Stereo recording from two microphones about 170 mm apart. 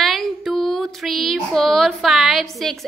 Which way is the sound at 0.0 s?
Centre (ahead or behind).